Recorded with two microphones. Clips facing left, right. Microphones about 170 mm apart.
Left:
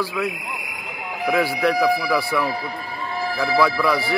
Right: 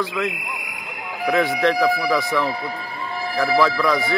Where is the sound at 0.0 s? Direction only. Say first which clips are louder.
Even; 10° left (ahead or behind).